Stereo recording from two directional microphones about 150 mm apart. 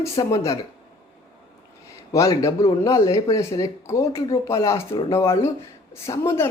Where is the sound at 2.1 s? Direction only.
20° left (ahead or behind).